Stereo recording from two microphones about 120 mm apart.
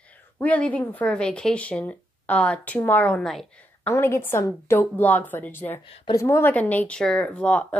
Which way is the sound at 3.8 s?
20° left (ahead or behind).